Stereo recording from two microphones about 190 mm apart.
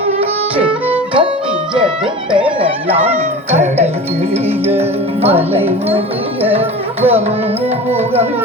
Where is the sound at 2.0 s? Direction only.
25° right (ahead or behind).